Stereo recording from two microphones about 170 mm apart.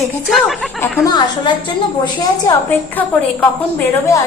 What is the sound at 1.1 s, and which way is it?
Speech, 25° left (ahead or behind).